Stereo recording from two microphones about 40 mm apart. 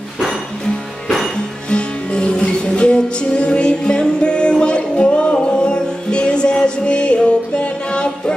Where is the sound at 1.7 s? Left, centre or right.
Left.